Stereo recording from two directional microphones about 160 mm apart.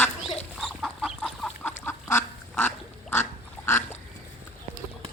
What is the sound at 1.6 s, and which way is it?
Duck, 15° left (ahead or behind).